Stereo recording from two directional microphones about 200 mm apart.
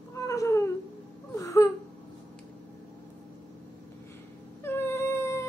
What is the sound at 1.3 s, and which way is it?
Wail, 15° left (ahead or behind).